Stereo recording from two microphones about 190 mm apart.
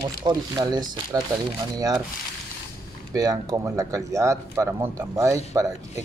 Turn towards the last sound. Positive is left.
turn(degrees=-15)  # may be behind; listen again after turning